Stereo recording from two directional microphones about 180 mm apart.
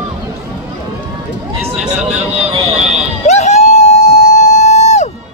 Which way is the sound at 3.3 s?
40° left (ahead or behind).